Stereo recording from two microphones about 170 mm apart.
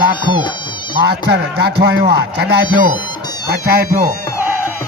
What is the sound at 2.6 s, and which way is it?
Speech, 25° left (ahead or behind).